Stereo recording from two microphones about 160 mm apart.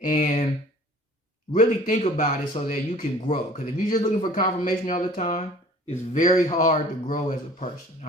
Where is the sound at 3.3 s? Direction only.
60° left (ahead or behind).